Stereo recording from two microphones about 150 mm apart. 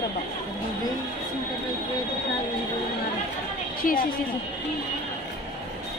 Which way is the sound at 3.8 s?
70° left (ahead or behind).